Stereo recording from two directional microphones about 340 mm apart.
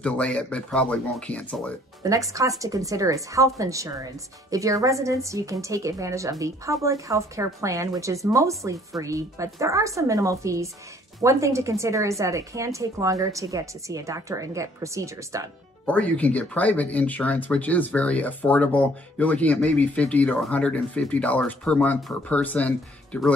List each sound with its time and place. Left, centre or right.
0.0 s speech: centre
2.0 s a woman's voice: centre
15.8 s speech: centre